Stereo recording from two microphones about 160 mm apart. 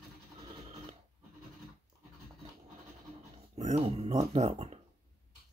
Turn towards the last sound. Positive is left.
turn(degrees=-40)  # may be behind; listen again after turning